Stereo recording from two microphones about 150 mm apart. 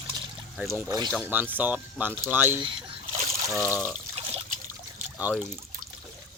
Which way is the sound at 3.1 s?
45° right (ahead or behind).